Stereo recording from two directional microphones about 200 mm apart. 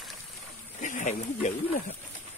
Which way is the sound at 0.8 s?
35° left (ahead or behind).